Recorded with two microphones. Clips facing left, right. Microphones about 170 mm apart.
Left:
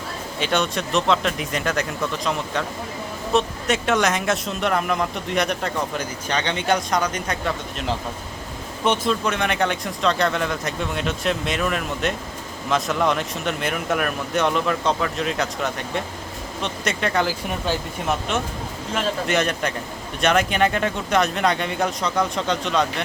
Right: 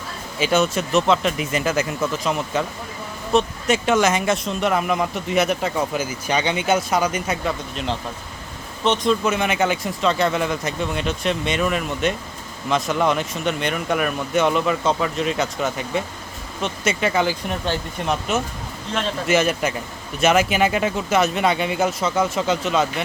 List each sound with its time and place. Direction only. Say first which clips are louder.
0.3 s speech: right 4 dB; 5° right (ahead or behind)
8.8 s speech: right 2 dB; 10° left (ahead or behind)
9.2 s speech: right 2 dB; 5° right (ahead or behind)